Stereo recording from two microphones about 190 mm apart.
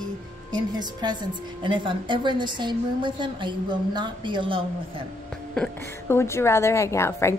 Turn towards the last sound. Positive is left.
turn(degrees=15)  # may be behind; listen again after turning